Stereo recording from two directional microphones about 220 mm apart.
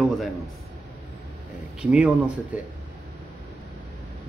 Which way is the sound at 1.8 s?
5° right (ahead or behind).